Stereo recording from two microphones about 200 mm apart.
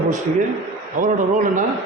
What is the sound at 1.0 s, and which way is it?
Speech, 40° right (ahead or behind).